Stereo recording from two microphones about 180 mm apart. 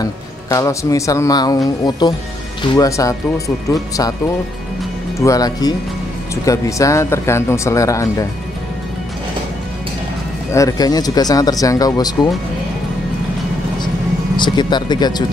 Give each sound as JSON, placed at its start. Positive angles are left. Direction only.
{"t": 0.0, "sound": "speech", "side_deg": 15}
{"t": 5.2, "sound": "speech", "side_deg": 20}
{"t": 10.5, "sound": "speech", "side_deg": 20}
{"t": 14.3, "sound": "speech", "side_deg": 25}